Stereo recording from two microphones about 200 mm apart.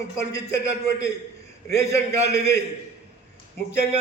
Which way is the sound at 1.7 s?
15° left (ahead or behind).